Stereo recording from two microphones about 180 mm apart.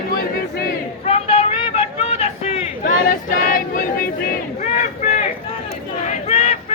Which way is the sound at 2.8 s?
50° left (ahead or behind).